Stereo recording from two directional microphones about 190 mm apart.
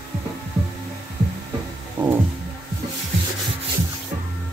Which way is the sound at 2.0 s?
10° right (ahead or behind).